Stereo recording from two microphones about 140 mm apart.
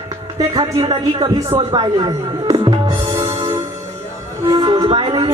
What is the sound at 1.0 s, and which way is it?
Speech, 25° right (ahead or behind).